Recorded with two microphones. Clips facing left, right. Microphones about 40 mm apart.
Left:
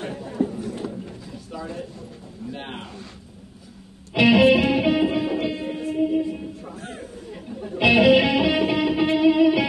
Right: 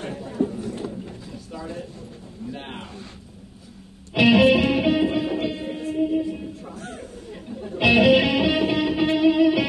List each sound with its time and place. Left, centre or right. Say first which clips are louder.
0.0 s chatter: even; centre
0.8 s a sound: left 1 dB; left
2.5 s speech: left 2 dB; centre
4.1 s music: even; centre
5.4 s music: left 1 dB; centre
7.7 s music: left 1 dB; centre